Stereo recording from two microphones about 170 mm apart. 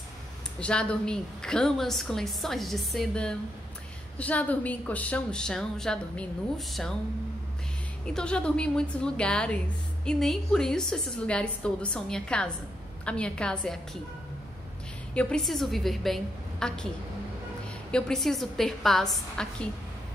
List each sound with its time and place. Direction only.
0.6 s a woman's voice: 5° left (ahead or behind)
8.0 s a woman's voice: 5° left (ahead or behind)
15.1 s a woman's voice: 5° left (ahead or behind)
17.9 s a woman's voice: 5° left (ahead or behind)